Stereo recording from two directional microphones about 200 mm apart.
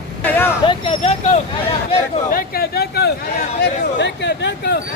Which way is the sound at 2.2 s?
45° left (ahead or behind).